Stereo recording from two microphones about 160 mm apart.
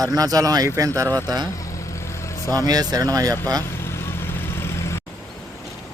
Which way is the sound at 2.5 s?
25° right (ahead or behind).